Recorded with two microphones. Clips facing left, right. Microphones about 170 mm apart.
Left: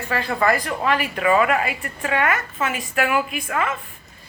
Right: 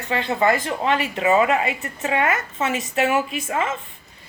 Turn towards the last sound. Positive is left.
turn(degrees=-25)  # may be behind; listen again after turning